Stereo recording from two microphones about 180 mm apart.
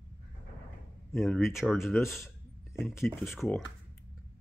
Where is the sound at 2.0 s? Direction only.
15° left (ahead or behind).